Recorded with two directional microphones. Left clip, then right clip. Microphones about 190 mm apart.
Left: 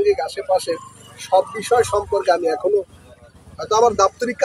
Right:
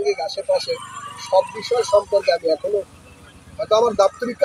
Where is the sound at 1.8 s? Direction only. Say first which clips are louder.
Right 2 dB; 35° left (ahead or behind).